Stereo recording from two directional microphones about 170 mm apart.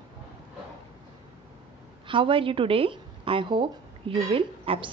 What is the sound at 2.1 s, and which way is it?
A woman's voice, 30° right (ahead or behind).